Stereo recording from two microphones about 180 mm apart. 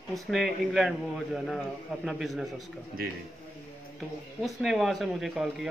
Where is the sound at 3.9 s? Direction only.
Centre (ahead or behind).